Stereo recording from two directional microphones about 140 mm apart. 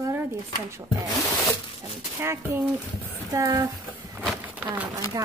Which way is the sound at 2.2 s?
20° right (ahead or behind).